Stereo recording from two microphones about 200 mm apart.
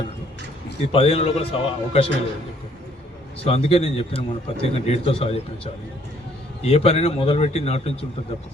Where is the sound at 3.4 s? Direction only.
30° left (ahead or behind).